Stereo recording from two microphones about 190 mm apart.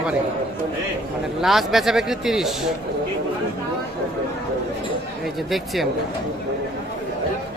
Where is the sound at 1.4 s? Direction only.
Centre (ahead or behind).